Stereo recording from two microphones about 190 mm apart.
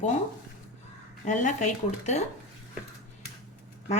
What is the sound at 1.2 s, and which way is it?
Speech, 40° left (ahead or behind).